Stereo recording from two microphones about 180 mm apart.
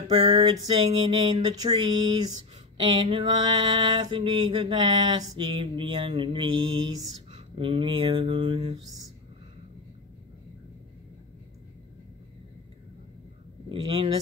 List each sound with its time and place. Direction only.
0.3 s a sound: 35° right (ahead or behind)
1.6 s mantra: 20° right (ahead or behind)
13.7 s mantra: 25° right (ahead or behind)